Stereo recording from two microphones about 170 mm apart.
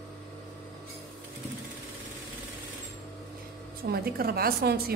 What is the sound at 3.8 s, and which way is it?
A woman's voice, 65° right (ahead or behind).